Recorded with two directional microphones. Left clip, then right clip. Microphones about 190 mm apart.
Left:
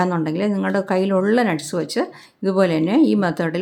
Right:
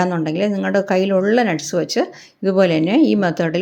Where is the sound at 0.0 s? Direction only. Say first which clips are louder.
Right 2 dB; centre (ahead or behind).